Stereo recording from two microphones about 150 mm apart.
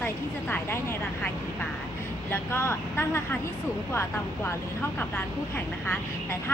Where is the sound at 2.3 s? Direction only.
15° left (ahead or behind).